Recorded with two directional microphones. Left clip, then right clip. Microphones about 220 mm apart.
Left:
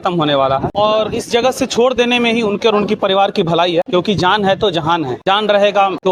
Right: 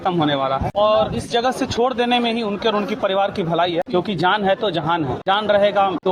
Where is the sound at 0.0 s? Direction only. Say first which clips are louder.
Left 5 dB; 50° left (ahead or behind).